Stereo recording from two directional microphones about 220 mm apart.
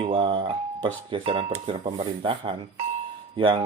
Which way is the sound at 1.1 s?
25° right (ahead or behind).